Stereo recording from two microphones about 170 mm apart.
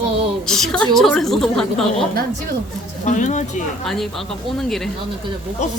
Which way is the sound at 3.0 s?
45° left (ahead or behind).